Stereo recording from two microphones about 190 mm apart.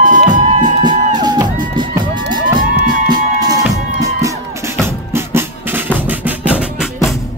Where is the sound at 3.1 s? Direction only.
20° right (ahead or behind).